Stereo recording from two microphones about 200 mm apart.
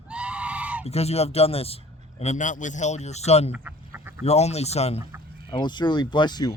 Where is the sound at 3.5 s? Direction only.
10° right (ahead or behind).